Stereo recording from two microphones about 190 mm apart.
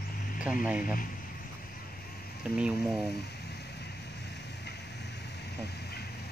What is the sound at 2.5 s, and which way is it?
Speech, 5° right (ahead or behind).